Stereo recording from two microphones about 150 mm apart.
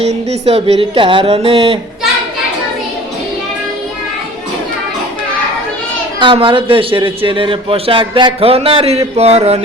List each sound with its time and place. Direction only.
0.0 s a man's voice: 45° right (ahead or behind)
6.1 s a man's voice: 35° right (ahead or behind)